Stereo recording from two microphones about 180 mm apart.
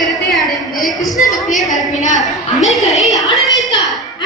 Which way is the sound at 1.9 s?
40° left (ahead or behind).